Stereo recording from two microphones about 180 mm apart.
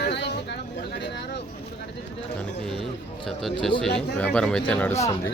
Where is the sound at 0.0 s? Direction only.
70° left (ahead or behind).